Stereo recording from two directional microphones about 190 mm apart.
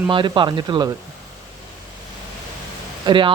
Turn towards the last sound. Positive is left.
turn(degrees=-25)  # may be behind; listen again after turning